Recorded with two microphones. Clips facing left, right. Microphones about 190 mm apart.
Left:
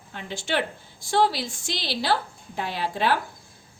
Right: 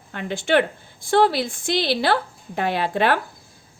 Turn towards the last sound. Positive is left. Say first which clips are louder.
# right 5 dB
turn(degrees=-60)  # may be behind; listen again after turning